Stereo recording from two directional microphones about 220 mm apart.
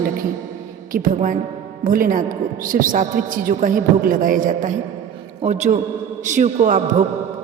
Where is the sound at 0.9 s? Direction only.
35° right (ahead or behind).